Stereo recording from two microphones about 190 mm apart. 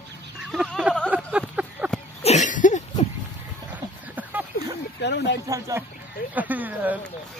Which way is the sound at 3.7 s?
10° right (ahead or behind).